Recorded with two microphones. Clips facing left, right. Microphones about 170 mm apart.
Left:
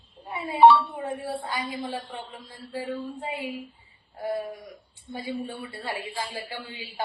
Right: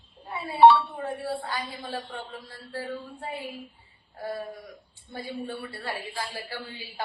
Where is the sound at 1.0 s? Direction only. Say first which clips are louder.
Even; 20° left (ahead or behind).